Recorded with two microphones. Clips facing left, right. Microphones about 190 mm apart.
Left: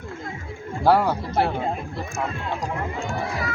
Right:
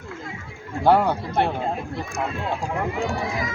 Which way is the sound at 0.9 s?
5° left (ahead or behind).